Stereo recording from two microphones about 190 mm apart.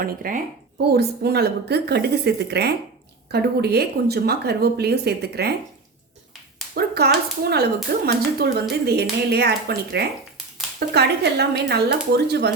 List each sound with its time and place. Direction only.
0.0 s a woman's voice: 50° right (ahead or behind)
6.7 s a woman's voice: 55° right (ahead or behind)